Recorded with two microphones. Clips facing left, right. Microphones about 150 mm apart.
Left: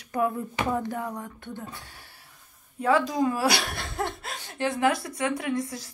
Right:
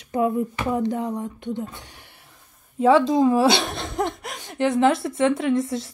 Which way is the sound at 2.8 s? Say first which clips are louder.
Right 7 dB; 25° right (ahead or behind).